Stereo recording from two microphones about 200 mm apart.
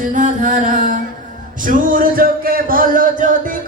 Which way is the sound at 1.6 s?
45° right (ahead or behind).